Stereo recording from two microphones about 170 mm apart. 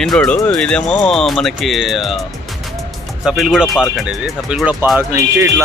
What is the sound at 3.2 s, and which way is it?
Speech, 5° right (ahead or behind).